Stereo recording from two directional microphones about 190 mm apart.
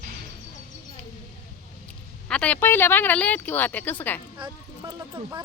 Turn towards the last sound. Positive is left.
turn(degrees=-20)  # may be behind; listen again after turning